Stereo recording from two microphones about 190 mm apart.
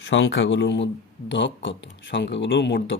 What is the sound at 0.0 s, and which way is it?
Speech, 70° left (ahead or behind).